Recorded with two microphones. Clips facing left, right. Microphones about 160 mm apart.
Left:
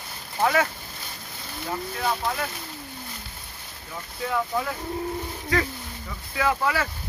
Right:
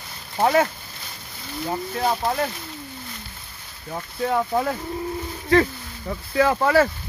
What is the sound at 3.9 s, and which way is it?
Speech, 45° right (ahead or behind).